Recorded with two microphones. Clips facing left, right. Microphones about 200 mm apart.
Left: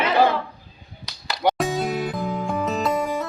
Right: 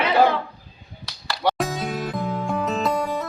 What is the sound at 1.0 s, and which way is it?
Finger snapping, 20° left (ahead or behind).